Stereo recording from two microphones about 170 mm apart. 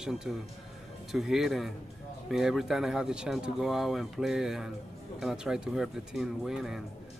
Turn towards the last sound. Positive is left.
turn(degrees=0)  # may be behind; listen again after turning